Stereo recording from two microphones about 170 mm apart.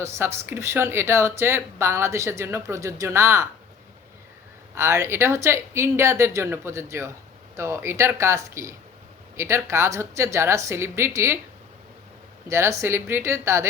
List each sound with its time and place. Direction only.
0.0 s speech: 15° right (ahead or behind)
4.7 s speech: 15° right (ahead or behind)
12.5 s speech: 15° right (ahead or behind)